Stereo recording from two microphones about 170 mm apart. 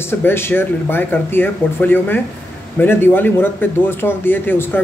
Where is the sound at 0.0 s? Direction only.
15° left (ahead or behind).